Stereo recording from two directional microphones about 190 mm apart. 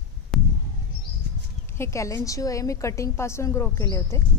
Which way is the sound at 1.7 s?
15° left (ahead or behind).